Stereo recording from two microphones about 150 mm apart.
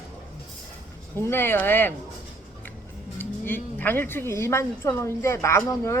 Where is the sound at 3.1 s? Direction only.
10° left (ahead or behind).